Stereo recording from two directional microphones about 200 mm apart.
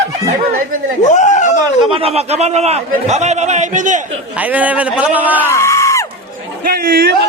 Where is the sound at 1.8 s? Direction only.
30° right (ahead or behind).